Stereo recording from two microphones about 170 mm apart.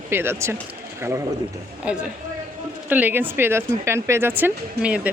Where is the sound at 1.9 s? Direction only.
5° right (ahead or behind).